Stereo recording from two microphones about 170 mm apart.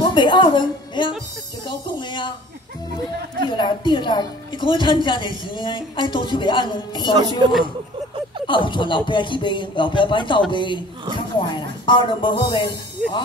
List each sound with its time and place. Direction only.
0.1 s a sound: 30° left (ahead or behind)
1.7 s a woman's voice: 25° left (ahead or behind)
3.4 s a woman's voice: 25° left (ahead or behind)
8.5 s a woman's voice: 30° left (ahead or behind)